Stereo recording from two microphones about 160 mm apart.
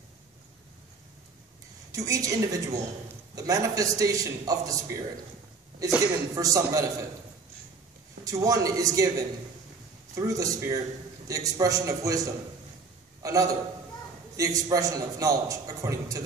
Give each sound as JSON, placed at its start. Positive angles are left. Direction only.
{"t": 1.9, "sound": "a man's voice", "side_deg": -20}
{"t": 5.9, "sound": "a woman's voice", "side_deg": -5}
{"t": 6.3, "sound": "a man's voice", "side_deg": -20}
{"t": 8.2, "sound": "a man's voice", "side_deg": -20}